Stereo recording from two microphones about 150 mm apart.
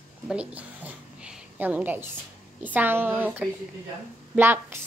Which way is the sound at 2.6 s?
10° right (ahead or behind).